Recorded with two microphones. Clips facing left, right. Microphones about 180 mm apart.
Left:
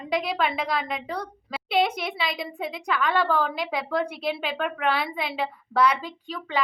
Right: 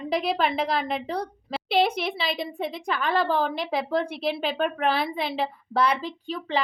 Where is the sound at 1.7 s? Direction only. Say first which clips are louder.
Right 1 dB; 30° right (ahead or behind).